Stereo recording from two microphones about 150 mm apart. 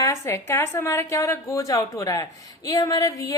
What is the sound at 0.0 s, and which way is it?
Speech, 20° left (ahead or behind).